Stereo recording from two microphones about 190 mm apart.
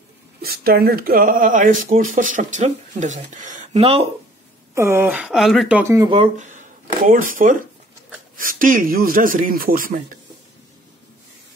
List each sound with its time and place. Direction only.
0.4 s speech: 55° right (ahead or behind); by 4.1 s 30° right (ahead or behind)
4.7 s speech: 15° right (ahead or behind)
6.0 s speech: 35° right (ahead or behind)